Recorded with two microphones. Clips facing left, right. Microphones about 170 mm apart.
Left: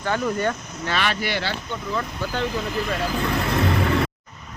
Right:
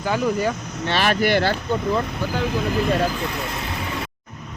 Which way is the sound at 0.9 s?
40° right (ahead or behind).